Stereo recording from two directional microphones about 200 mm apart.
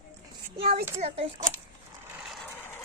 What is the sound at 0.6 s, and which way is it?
Speech, 50° right (ahead or behind).